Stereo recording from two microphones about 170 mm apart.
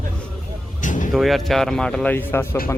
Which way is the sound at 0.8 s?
50° left (ahead or behind).